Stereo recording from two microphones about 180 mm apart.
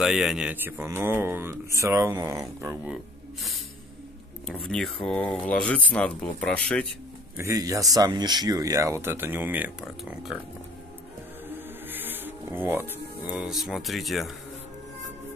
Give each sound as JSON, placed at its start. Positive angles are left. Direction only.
{"t": 0.0, "sound": "speech", "side_deg": 0}
{"t": 4.5, "sound": "speech", "side_deg": 5}
{"t": 7.3, "sound": "speech", "side_deg": -15}
{"t": 11.9, "sound": "speech", "side_deg": -10}